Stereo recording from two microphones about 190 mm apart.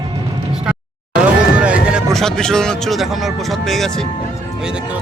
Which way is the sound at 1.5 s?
5° right (ahead or behind).